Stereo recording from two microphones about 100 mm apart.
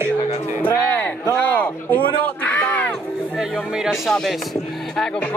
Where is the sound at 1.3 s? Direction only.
15° left (ahead or behind).